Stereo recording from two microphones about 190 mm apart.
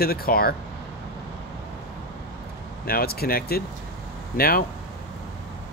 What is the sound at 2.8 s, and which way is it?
Speech, 50° left (ahead or behind).